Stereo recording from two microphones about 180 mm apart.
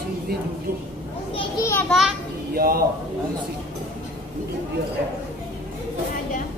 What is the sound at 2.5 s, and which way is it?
Speech, 55° right (ahead or behind).